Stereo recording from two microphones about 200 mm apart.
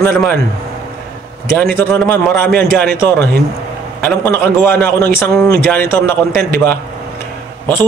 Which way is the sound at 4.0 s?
10° left (ahead or behind).